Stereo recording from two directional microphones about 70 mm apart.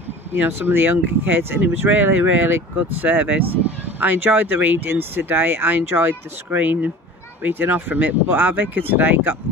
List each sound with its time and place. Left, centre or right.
0.3 s speech: right